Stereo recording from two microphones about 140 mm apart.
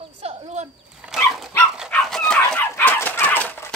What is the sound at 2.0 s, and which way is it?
Chicken, 5° left (ahead or behind).